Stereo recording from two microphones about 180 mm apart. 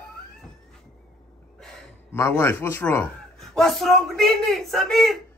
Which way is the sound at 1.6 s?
Centre (ahead or behind).